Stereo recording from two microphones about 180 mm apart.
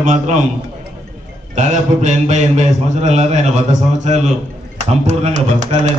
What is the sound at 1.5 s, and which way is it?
A man's voice, 40° right (ahead or behind).